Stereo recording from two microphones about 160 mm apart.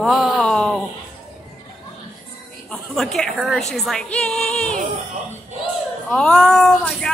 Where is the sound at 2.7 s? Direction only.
5° left (ahead or behind).